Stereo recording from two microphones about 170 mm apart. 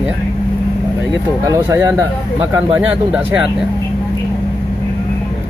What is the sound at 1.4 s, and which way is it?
Speech, 20° right (ahead or behind).